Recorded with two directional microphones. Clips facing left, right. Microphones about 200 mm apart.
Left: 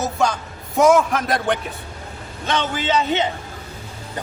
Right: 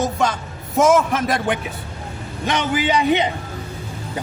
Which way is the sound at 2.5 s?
15° right (ahead or behind).